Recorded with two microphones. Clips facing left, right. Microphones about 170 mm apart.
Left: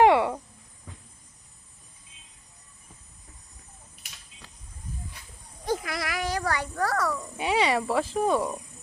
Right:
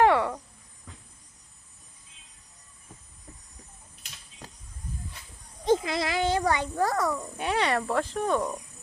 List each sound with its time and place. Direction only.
0.0 s cricket: 15° left (ahead or behind)
5.6 s a sound: 25° right (ahead or behind)
7.3 s insect: 10° left (ahead or behind)